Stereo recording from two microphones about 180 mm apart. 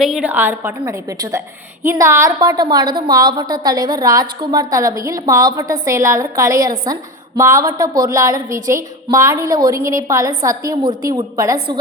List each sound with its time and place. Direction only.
0.0 s a woman's voice: 5° right (ahead or behind); by 8.4 s 20° right (ahead or behind)
8.4 s a woman's voice: 45° right (ahead or behind)
8.7 s a woman's voice: 15° right (ahead or behind)